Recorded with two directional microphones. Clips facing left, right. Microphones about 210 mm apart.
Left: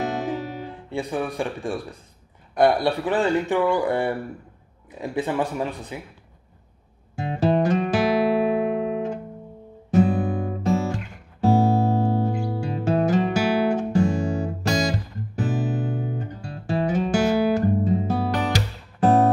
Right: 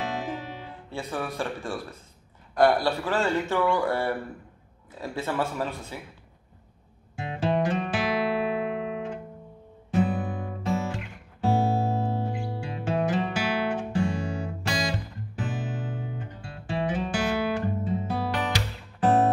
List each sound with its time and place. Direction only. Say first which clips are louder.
0.2 s music: left 6 dB; 45° left (ahead or behind)
0.8 s speech: left 5 dB; 15° left (ahead or behind)
7.2 s music: left 5 dB; 40° left (ahead or behind)
9.8 s guitar: left 6 dB; 40° left (ahead or behind)
11.4 s music: left 6 dB; 40° left (ahead or behind)